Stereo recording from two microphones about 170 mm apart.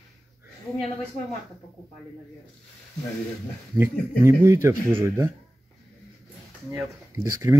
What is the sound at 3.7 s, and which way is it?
Speech, 15° right (ahead or behind).